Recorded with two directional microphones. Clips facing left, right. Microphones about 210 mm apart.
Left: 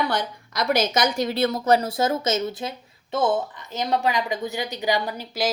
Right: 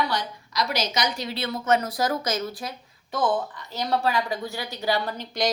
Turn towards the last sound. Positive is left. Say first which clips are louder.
# even
turn(degrees=5)  # may be behind; listen again after turning